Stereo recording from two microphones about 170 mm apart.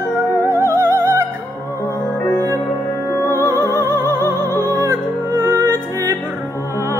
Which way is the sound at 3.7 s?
15° right (ahead or behind).